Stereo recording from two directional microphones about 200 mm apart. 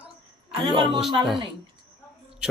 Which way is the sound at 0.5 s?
25° right (ahead or behind).